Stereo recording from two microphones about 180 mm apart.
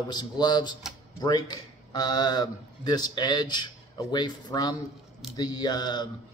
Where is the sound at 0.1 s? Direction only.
25° left (ahead or behind).